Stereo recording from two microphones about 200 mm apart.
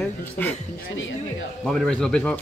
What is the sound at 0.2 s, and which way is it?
Speech, 10° left (ahead or behind).